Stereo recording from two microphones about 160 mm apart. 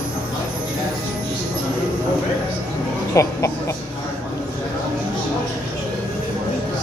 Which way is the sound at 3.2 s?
20° left (ahead or behind).